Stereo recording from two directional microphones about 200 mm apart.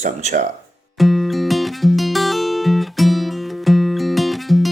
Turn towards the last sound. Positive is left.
turn(degrees=0)  # may be behind; listen again after turning